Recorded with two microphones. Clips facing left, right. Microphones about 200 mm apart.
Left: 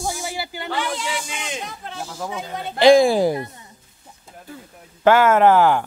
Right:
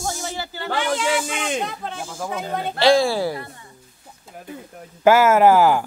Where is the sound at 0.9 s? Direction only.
55° right (ahead or behind).